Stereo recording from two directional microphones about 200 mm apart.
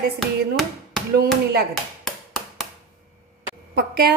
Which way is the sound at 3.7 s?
50° right (ahead or behind).